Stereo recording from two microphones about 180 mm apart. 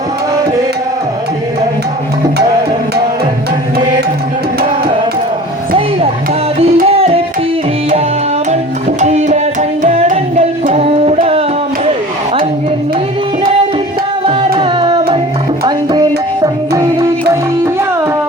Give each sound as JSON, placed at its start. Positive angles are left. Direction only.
{"t": 6.8, "sound": "music", "side_deg": -35}
{"t": 9.0, "sound": "music", "side_deg": -40}
{"t": 14.3, "sound": "music", "side_deg": -30}
{"t": 16.4, "sound": "music", "side_deg": -15}